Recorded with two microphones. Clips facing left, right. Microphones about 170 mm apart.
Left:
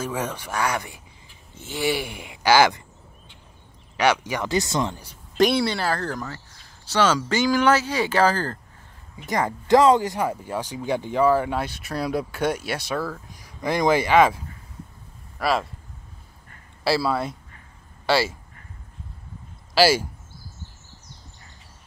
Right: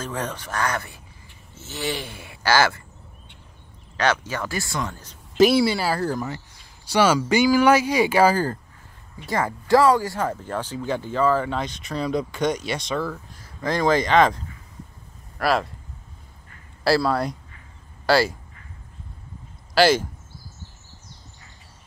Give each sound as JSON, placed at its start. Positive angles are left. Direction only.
{"t": 0.0, "sound": "speech", "side_deg": 10}
{"t": 3.9, "sound": "speech", "side_deg": 15}
{"t": 5.4, "sound": "speech", "side_deg": -5}
{"t": 9.2, "sound": "speech", "side_deg": 20}
{"t": 13.3, "sound": "speech", "side_deg": 15}
{"t": 16.8, "sound": "speech", "side_deg": 0}
{"t": 19.7, "sound": "speech", "side_deg": 5}